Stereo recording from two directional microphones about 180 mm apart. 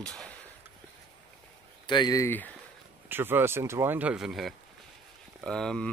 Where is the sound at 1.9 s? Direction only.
20° left (ahead or behind).